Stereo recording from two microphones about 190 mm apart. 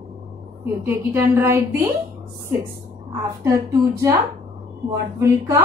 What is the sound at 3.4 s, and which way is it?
A woman's voice, 15° right (ahead or behind).